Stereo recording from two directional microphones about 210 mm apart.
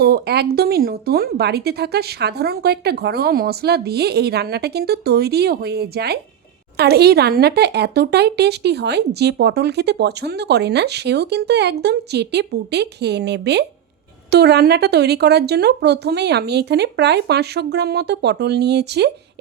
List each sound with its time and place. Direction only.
0.0 s speech: 50° right (ahead or behind)